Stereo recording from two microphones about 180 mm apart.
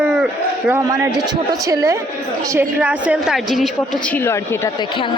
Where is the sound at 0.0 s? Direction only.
5° right (ahead or behind).